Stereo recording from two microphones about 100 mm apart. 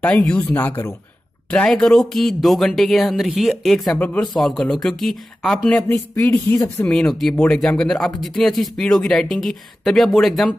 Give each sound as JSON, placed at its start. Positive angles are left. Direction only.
{"t": 0.4, "sound": "speech", "side_deg": 20}
{"t": 1.5, "sound": "speech", "side_deg": 10}
{"t": 4.0, "sound": "speech", "side_deg": 15}
{"t": 4.4, "sound": "speech", "side_deg": 0}
{"t": 5.9, "sound": "speech", "side_deg": 20}
{"t": 6.3, "sound": "speech", "side_deg": 35}
{"t": 6.9, "sound": "speech", "side_deg": 5}